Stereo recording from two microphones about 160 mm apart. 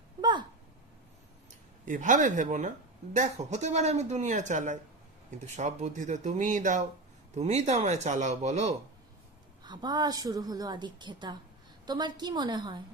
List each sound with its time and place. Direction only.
0.2 s a sound: 30° right (ahead or behind)
1.8 s speech: 55° right (ahead or behind)
9.6 s a woman's voice: 25° right (ahead or behind)